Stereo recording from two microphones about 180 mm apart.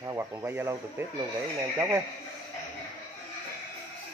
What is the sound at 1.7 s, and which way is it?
Speech, 15° right (ahead or behind).